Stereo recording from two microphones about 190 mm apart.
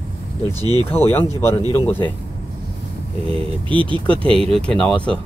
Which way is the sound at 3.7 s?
25° right (ahead or behind).